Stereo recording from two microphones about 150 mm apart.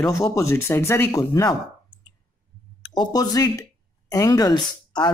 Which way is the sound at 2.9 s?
25° left (ahead or behind).